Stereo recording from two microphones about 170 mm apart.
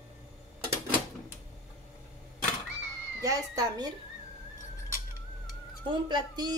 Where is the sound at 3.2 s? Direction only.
20° right (ahead or behind).